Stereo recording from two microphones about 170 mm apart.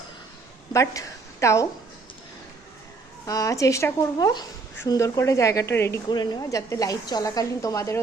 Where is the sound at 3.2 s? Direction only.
20° left (ahead or behind).